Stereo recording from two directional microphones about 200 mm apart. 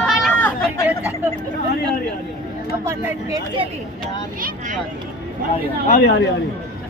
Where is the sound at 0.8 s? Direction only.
5° right (ahead or behind).